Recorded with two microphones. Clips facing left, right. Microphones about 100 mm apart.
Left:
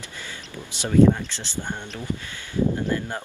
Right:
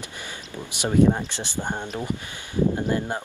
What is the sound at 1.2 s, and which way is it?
Speech, 15° right (ahead or behind).